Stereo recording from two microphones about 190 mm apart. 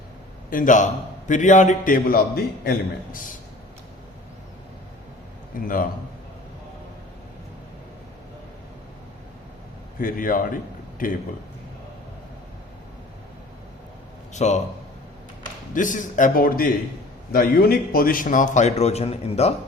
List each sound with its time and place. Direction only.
0.5 s a man's voice: 45° left (ahead or behind)
5.5 s a man's voice: 45° left (ahead or behind)
10.0 s a man's voice: 45° left (ahead or behind)
14.3 s a man's voice: 40° left (ahead or behind)
15.7 s a man's voice: 45° left (ahead or behind)